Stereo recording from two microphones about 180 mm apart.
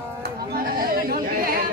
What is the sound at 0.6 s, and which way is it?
Chatter, 55° right (ahead or behind).